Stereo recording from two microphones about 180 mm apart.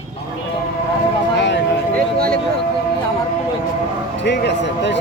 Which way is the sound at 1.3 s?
80° left.